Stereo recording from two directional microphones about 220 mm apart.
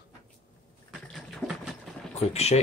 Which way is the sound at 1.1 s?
5° right (ahead or behind).